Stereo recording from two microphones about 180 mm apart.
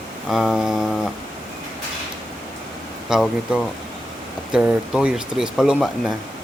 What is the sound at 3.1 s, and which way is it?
Speech, 5° right (ahead or behind).